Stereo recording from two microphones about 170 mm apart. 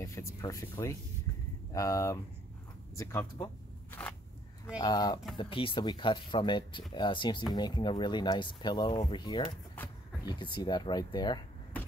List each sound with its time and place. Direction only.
0.0 s speech: 15° left (ahead or behind)
4.7 s speech: 25° left (ahead or behind)
9.8 s a sound: 10° left (ahead or behind)
10.2 s speech: 25° left (ahead or behind)